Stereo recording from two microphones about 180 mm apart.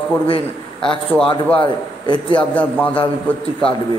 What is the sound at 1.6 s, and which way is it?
Speech, 25° left (ahead or behind).